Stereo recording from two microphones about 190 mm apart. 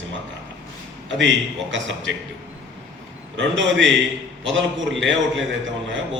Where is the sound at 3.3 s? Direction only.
75° right (ahead or behind).